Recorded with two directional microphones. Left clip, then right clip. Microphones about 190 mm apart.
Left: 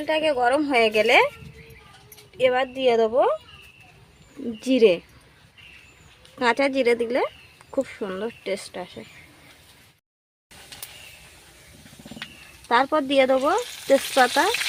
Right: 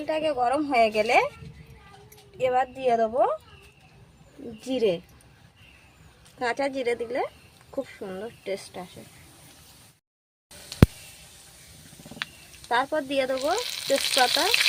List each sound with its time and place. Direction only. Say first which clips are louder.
0.0 s speech: left 4 dB; 45° left (ahead or behind)
2.4 s speech: left 4 dB; 45° left (ahead or behind)
4.6 s speech: left 7 dB; 45° left (ahead or behind)
6.4 s speech: left 6 dB; 45° left (ahead or behind)
12.6 s speech: left 5 dB; 50° left (ahead or behind)